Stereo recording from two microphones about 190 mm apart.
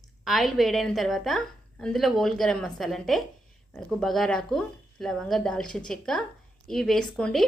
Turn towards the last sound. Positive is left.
turn(degrees=0)  # may be behind; listen again after turning